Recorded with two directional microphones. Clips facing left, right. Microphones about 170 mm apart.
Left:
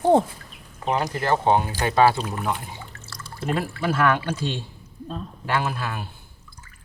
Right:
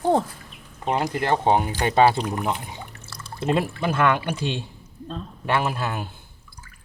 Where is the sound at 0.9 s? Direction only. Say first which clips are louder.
Even; 10° right (ahead or behind).